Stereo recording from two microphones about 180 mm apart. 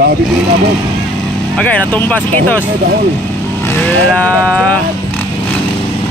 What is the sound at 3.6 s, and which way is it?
Vehicle, 10° left (ahead or behind).